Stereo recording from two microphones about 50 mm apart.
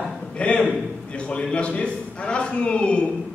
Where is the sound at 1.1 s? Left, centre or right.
Left.